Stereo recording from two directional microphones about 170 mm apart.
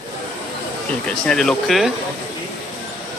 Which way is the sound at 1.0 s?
5° left (ahead or behind).